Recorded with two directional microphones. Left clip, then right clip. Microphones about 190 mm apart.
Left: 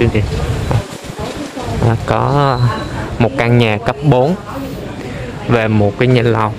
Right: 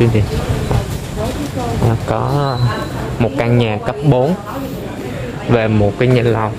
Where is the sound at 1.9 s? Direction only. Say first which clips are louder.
Left 7 dB; 10° left (ahead or behind).